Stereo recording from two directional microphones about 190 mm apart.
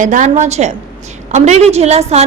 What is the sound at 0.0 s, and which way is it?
A woman's voice, 40° right (ahead or behind).